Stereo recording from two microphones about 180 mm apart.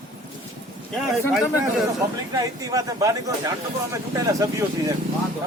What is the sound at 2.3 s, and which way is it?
Speech, 20° right (ahead or behind).